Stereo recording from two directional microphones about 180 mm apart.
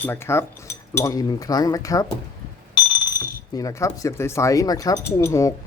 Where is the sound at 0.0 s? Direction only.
15° left (ahead or behind).